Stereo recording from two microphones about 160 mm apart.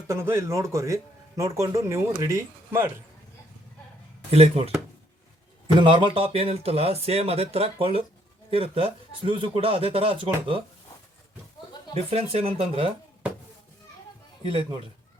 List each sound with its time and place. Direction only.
0.1 s speech: 15° right (ahead or behind)
4.3 s speech: 40° right (ahead or behind)
5.8 s speech: 30° right (ahead or behind)
11.9 s speech: 40° right (ahead or behind)
14.4 s speech: 35° right (ahead or behind)